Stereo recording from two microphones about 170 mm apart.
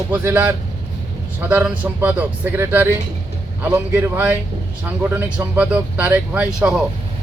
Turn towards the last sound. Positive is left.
turn(degrees=-5)  # may be behind; listen again after turning